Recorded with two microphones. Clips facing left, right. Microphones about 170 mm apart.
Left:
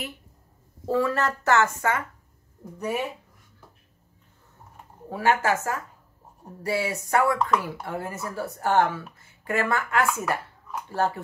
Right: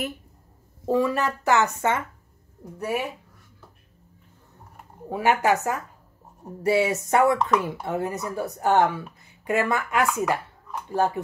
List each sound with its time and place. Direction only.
0.8 s speech: 15° right (ahead or behind)
2.8 s speech: 10° right (ahead or behind)
5.1 s speech: 15° right (ahead or behind)